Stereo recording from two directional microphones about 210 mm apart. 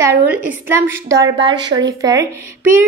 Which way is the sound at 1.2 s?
20° right (ahead or behind).